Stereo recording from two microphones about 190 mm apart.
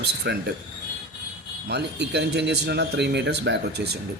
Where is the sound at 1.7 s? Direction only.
65° right (ahead or behind).